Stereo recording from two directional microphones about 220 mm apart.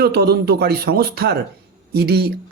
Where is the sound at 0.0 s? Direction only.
45° right (ahead or behind).